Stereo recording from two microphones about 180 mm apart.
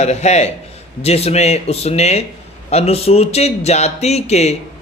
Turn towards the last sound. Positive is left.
turn(degrees=35)  # may be behind; listen again after turning